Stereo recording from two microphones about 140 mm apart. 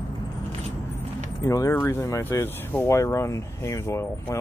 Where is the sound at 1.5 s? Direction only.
20° left (ahead or behind).